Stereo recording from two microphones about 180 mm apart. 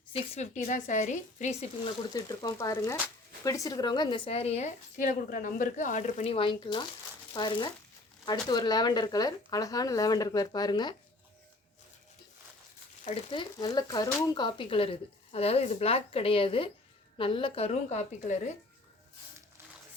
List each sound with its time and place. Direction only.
0.1 s speech: 35° left (ahead or behind)
2.1 s speech: 20° left (ahead or behind)
13.3 s speech: 25° left (ahead or behind); by 18.5 s 40° left (ahead or behind)